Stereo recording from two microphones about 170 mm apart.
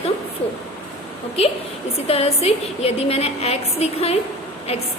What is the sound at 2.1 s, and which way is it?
A woman's voice, 35° left (ahead or behind).